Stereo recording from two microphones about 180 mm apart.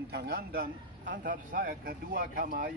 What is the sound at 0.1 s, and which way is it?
A man's voice, 60° right (ahead or behind).